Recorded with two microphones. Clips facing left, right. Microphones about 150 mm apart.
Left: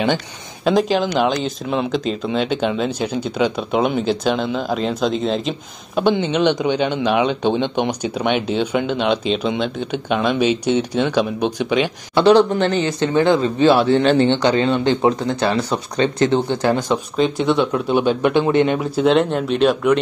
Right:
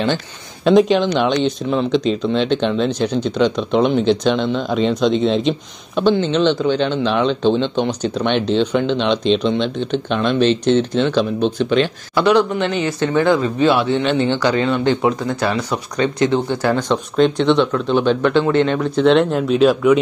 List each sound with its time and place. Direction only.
0.7 s speech: centre (ahead or behind)
6.0 s a man's voice: 15° left (ahead or behind)
12.2 s speech: 30° left (ahead or behind)
13.0 s speech: 25° left (ahead or behind)
14.3 s speech: 25° left (ahead or behind)
16.7 s a man's voice: 5° left (ahead or behind)